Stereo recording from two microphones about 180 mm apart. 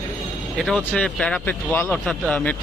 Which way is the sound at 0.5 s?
Centre (ahead or behind).